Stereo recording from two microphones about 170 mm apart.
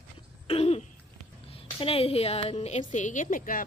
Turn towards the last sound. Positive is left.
turn(degrees=55)  # may be behind; listen again after turning